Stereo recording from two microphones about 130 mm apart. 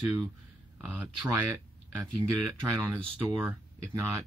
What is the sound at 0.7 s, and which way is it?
Speech, 10° right (ahead or behind).